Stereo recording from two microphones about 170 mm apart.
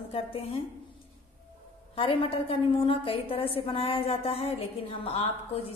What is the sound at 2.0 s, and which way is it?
A woman's voice, 30° left (ahead or behind).